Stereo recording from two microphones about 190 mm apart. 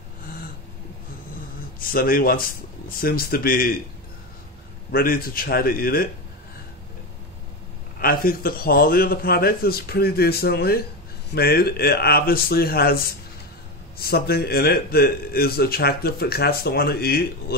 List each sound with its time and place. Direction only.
1.8 s a man's voice: 50° left (ahead or behind)
4.9 s a man's voice: 50° left (ahead or behind)
8.0 s a man's voice: 50° left (ahead or behind)